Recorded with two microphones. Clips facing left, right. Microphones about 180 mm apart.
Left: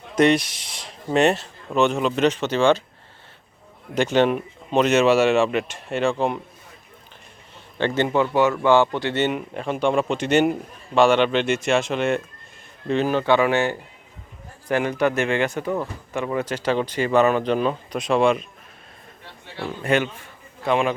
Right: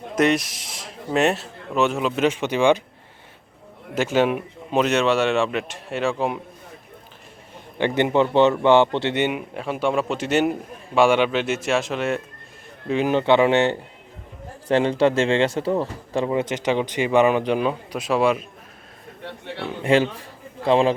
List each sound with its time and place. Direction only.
0.2 s a man's voice: centre (ahead or behind)
3.9 s a man's voice: 5° right (ahead or behind)
7.8 s speech: 15° right (ahead or behind)
9.2 s a man's voice: 5° right (ahead or behind)
12.9 s speech: 15° right (ahead or behind)
19.2 s a man's voice: 65° right (ahead or behind)
19.8 s a man's voice: 30° right (ahead or behind)